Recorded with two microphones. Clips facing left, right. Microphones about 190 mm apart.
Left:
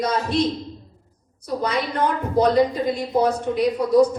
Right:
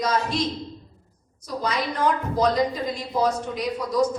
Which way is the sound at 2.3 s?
60° left (ahead or behind).